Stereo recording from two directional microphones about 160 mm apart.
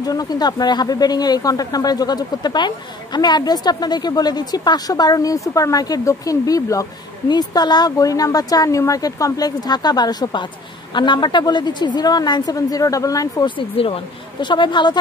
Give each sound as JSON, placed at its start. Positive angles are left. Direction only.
{"t": 0.0, "sound": "speech", "side_deg": 25}